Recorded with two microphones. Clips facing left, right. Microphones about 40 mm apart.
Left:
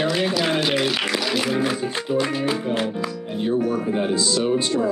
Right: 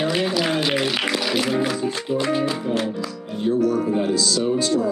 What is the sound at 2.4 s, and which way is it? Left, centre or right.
Speech, centre.